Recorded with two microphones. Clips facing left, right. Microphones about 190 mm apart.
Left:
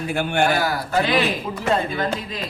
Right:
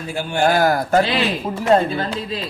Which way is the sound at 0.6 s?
50° right (ahead or behind).